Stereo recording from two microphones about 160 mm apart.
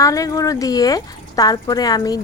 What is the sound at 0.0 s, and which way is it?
A woman's voice, 20° left (ahead or behind).